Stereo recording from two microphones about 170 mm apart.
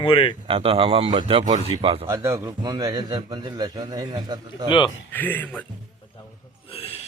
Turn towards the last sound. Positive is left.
turn(degrees=35)  # may be behind; listen again after turning